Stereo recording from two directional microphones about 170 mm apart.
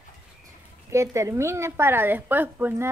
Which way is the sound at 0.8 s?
15° right (ahead or behind).